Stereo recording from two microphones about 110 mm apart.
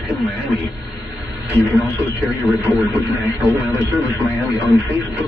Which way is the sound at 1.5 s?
15° right (ahead or behind).